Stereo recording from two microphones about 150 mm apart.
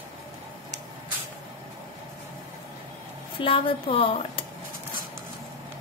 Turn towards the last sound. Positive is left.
turn(degrees=35)  # may be behind; listen again after turning